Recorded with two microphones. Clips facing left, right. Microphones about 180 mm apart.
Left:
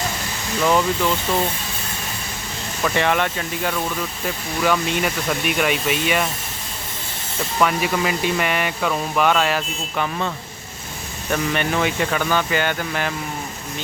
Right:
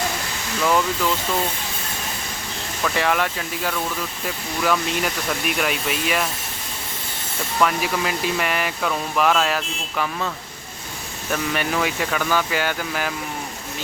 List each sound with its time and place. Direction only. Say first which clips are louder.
0.6 s speech: left 2 dB; 15° left (ahead or behind)
2.9 s speech: left 2 dB; centre (ahead or behind)
7.6 s speech: left 2 dB; centre (ahead or behind)